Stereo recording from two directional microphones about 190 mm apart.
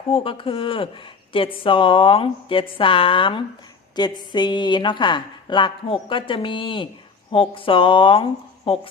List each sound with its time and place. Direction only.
0.1 s speech: 30° left (ahead or behind)